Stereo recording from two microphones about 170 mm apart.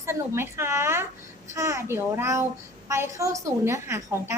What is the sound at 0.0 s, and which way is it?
A woman's voice, 15° right (ahead or behind).